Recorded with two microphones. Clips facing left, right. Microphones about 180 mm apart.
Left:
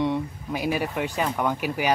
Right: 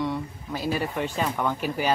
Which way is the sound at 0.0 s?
20° left (ahead or behind).